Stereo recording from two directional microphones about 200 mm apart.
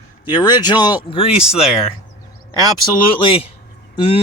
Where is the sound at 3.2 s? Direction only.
25° left (ahead or behind).